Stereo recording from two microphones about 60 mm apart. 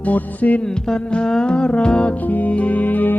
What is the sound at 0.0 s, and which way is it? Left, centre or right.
Speech, left.